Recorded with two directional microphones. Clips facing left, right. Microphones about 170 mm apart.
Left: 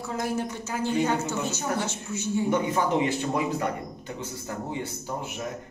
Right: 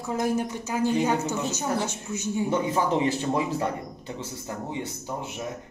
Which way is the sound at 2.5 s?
30° right (ahead or behind).